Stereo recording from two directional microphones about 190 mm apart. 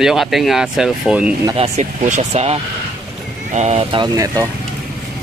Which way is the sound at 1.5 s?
35° right (ahead or behind).